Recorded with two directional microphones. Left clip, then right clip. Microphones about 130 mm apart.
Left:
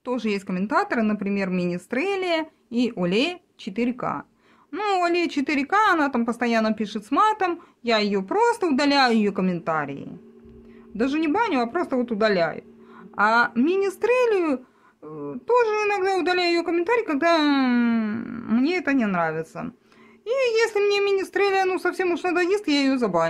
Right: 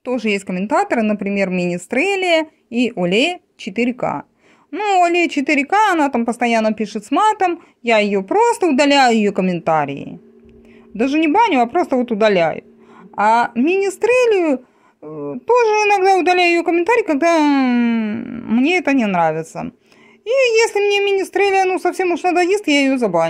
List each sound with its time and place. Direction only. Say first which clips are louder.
0.0 s a woman's voice: right 7 dB; 25° right (ahead or behind)
4.6 s a woman's voice: right 8 dB; 15° right (ahead or behind); by 10.0 s 35° right (ahead or behind)
11.0 s a woman's voice: right 8 dB; 25° right (ahead or behind)
13.1 s a woman's voice: right 5 dB; 20° right (ahead or behind)
15.0 s speech: right 7 dB; 10° right (ahead or behind)
15.4 s a woman's voice: right 7 dB; 30° right (ahead or behind)